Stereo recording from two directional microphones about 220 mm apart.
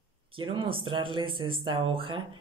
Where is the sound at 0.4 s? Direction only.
25° right (ahead or behind).